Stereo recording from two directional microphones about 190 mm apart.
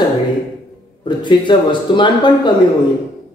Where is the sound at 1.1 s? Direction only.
25° left (ahead or behind).